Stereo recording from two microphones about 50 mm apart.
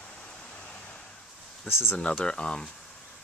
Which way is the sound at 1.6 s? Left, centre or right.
Left.